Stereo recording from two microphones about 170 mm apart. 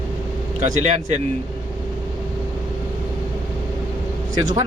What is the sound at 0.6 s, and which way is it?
Speech, 40° right (ahead or behind).